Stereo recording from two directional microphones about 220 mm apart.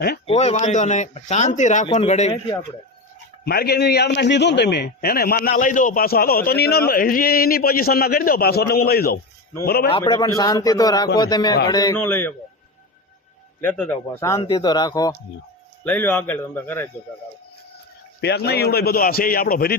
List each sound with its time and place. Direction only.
0.3 s speech: 30° left (ahead or behind)
3.4 s a man's voice: 45° left (ahead or behind)
10.0 s speech: 15° left (ahead or behind)
13.6 s speech: 5° left (ahead or behind)
18.2 s a man's voice: 50° left (ahead or behind)